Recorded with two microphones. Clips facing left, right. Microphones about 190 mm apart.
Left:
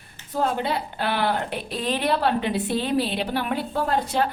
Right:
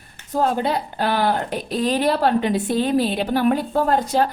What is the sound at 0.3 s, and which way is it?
A woman's voice, 40° right (ahead or behind).